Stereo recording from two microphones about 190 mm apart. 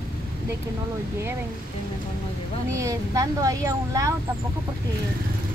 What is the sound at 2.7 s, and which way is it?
Speech, 15° right (ahead or behind).